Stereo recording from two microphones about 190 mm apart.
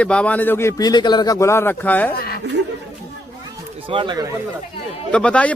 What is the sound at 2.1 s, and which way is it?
Speech, 55° left (ahead or behind).